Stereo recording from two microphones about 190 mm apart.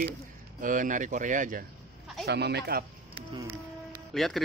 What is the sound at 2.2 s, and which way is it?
Speech, 60° right (ahead or behind).